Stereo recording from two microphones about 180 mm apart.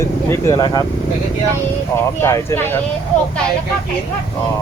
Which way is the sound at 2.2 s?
15° left (ahead or behind).